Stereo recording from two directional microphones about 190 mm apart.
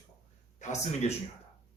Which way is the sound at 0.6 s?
40° left (ahead or behind).